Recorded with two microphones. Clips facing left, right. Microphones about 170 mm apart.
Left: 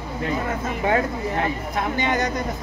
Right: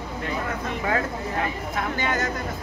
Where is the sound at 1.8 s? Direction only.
20° left (ahead or behind).